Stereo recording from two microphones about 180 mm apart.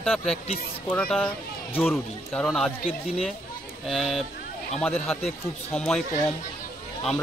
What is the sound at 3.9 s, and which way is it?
Speech, centre (ahead or behind).